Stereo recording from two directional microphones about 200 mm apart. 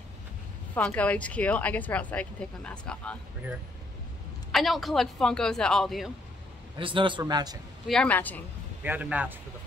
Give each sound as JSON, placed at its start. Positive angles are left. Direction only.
{"t": 0.7, "sound": "speech", "side_deg": 5}
{"t": 4.5, "sound": "a man's voice", "side_deg": 0}
{"t": 6.8, "sound": "a man's voice", "side_deg": -25}
{"t": 7.9, "sound": "speech", "side_deg": 5}
{"t": 8.8, "sound": "a man's voice", "side_deg": -10}